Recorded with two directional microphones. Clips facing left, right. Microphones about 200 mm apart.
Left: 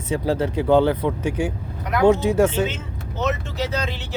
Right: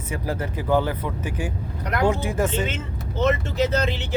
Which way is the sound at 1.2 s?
70° left (ahead or behind).